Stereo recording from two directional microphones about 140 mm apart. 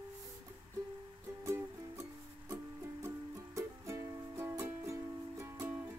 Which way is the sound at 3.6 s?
20° right (ahead or behind).